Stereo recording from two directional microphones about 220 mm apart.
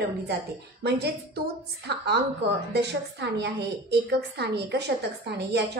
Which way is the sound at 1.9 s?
50° right (ahead or behind).